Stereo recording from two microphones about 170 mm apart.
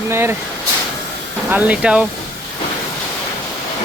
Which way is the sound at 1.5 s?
10° right (ahead or behind).